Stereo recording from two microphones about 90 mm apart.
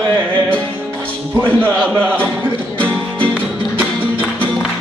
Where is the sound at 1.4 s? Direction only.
15° left (ahead or behind).